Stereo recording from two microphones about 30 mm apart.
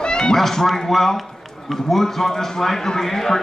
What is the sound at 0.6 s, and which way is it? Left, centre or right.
A man's voice, centre.